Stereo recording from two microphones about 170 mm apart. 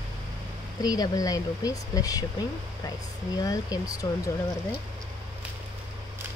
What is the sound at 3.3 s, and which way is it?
Speech, 20° left (ahead or behind).